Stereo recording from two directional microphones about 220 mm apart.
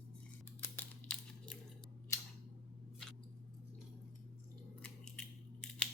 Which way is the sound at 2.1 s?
15° left (ahead or behind).